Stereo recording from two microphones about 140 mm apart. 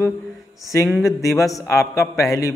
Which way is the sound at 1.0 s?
20° left (ahead or behind).